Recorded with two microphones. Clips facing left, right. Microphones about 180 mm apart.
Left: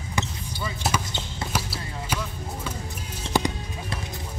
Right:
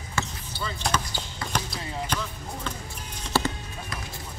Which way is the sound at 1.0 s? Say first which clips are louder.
Left 2 dB; 25° left (ahead or behind).